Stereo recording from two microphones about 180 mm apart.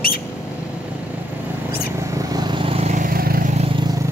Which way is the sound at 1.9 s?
20° right (ahead or behind).